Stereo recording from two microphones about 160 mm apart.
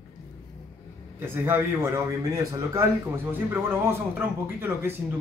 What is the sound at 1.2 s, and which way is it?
Speech, 15° right (ahead or behind).